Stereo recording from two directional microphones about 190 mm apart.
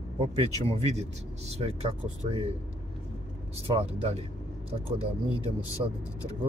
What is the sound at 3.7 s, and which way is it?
Speech, 30° right (ahead or behind).